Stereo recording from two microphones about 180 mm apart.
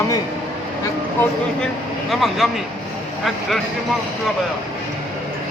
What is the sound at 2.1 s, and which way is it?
Speech, centre (ahead or behind).